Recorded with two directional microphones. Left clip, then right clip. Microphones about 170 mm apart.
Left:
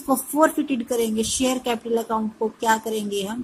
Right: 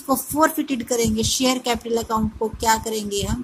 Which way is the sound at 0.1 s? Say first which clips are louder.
Even; 5° left (ahead or behind).